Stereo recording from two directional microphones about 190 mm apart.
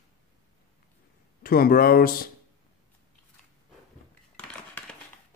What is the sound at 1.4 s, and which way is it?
Speech, 50° left (ahead or behind).